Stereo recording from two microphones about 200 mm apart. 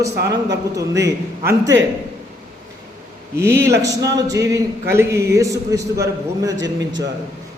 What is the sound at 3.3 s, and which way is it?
A man's voice, 15° right (ahead or behind).